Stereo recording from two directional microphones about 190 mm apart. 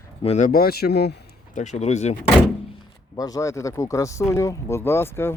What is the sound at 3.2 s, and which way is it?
Speech, 20° left (ahead or behind).